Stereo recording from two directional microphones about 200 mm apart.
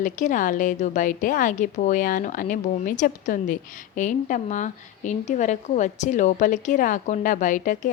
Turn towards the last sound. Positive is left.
turn(degrees=40)  # may be behind; listen again after turning